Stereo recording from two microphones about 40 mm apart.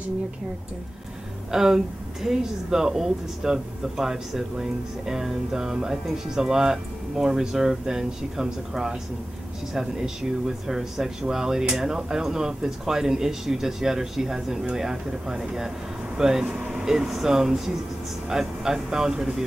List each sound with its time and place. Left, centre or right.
1.5 s speech: centre